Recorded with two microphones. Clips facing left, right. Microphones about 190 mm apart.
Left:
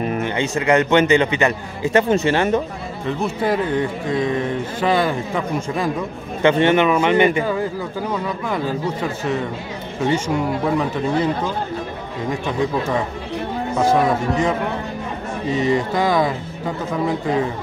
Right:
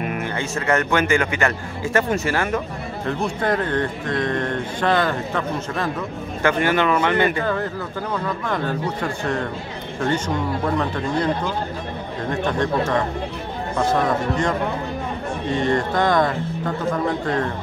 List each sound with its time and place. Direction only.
0.0 s music: 30° left (ahead or behind)
0.4 s a man's voice: 15° left (ahead or behind)
3.1 s speech: 5° left (ahead or behind)
6.4 s speech: 20° left (ahead or behind)
12.3 s speech: 5° left (ahead or behind)